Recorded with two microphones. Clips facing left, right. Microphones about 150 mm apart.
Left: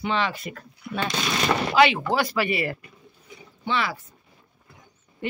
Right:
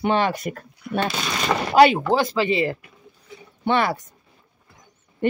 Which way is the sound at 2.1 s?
20° right (ahead or behind).